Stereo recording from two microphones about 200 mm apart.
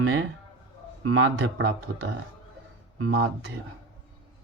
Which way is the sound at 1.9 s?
60° right (ahead or behind).